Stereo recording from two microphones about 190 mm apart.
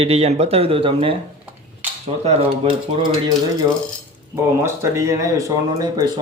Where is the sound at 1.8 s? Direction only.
10° right (ahead or behind).